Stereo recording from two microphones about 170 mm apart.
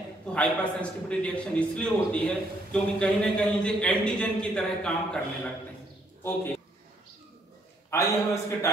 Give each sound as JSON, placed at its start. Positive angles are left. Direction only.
{"t": 0.3, "sound": "a man's voice", "side_deg": 5}
{"t": 7.9, "sound": "a man's voice", "side_deg": 15}